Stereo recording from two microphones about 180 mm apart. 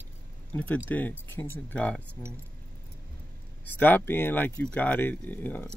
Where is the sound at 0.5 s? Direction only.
10° left (ahead or behind).